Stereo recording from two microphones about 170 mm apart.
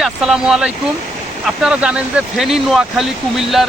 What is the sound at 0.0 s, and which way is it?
Speech, 5° right (ahead or behind).